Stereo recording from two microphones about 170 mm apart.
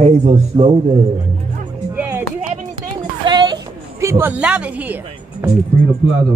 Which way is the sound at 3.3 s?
25° right (ahead or behind).